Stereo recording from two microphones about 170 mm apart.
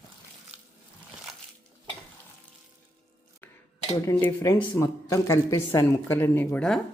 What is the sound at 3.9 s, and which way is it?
Speech, 15° left (ahead or behind).